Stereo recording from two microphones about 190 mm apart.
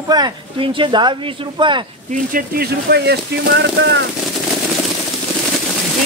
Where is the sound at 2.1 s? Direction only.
45° right (ahead or behind); by 4.0 s 65° right (ahead or behind).